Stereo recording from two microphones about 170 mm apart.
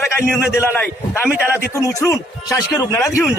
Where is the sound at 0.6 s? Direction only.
10° left (ahead or behind).